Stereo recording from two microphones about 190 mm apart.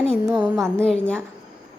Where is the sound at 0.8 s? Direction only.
5° left (ahead or behind).